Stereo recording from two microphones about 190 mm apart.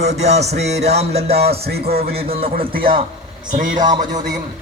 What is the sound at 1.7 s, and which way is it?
Music, 55° right (ahead or behind).